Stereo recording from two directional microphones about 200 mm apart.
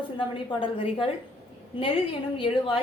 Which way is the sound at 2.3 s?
25° left (ahead or behind).